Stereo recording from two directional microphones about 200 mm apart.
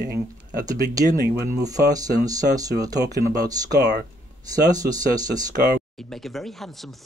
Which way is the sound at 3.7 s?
55° right (ahead or behind).